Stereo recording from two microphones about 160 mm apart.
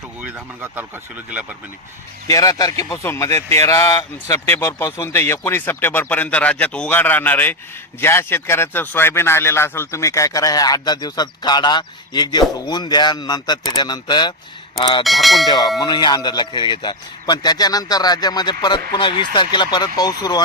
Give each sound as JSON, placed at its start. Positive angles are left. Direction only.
{"t": 0.2, "sound": "speech", "side_deg": -10}
{"t": 2.2, "sound": "speech", "side_deg": 20}
{"t": 15.0, "sound": "bell", "side_deg": 0}
{"t": 15.4, "sound": "speech", "side_deg": 25}